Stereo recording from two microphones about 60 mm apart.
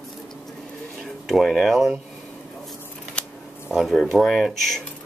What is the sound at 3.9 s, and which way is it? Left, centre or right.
Speech, centre.